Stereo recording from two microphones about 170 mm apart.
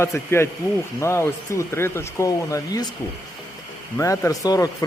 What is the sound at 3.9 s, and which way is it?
Speech, 20° left (ahead or behind).